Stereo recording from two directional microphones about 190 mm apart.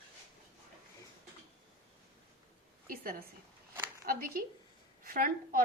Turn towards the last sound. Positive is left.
turn(degrees=-50)  # may be behind; listen again after turning